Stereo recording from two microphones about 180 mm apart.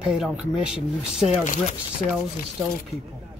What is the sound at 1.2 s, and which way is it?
Speech, 45° left (ahead or behind).